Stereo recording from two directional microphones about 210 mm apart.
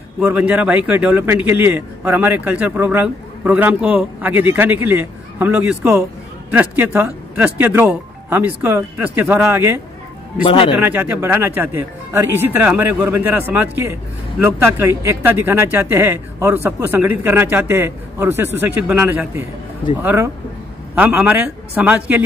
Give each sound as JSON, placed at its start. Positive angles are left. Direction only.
{"t": 0.2, "sound": "a man's voice", "side_deg": -5}
{"t": 10.4, "sound": "speech", "side_deg": 25}
{"t": 10.8, "sound": "a man's voice", "side_deg": -10}